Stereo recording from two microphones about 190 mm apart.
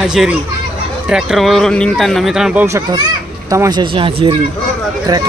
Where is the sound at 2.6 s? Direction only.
15° right (ahead or behind).